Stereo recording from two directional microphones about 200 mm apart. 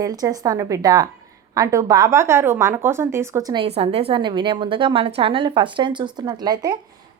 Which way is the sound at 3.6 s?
30° right (ahead or behind).